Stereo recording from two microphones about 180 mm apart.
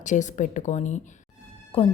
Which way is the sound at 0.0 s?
40° left (ahead or behind).